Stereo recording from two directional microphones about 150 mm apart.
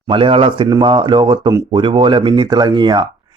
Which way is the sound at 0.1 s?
35° right (ahead or behind).